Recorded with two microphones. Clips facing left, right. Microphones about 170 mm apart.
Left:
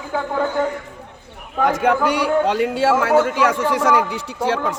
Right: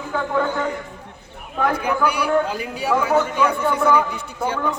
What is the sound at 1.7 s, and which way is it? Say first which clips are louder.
A man's voice: left 4 dB; 90° left.